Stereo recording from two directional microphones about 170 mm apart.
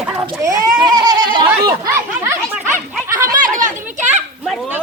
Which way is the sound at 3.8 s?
45° right (ahead or behind).